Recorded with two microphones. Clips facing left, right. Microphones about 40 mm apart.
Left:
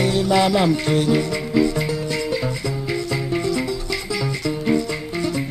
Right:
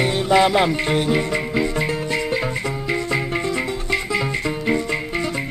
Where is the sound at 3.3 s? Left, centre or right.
Right.